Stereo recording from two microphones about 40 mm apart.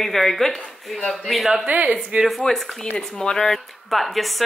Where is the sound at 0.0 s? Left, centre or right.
Centre.